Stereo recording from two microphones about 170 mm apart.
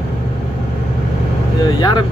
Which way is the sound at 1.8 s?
25° left (ahead or behind).